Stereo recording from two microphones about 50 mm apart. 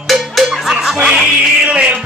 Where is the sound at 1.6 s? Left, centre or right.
Right.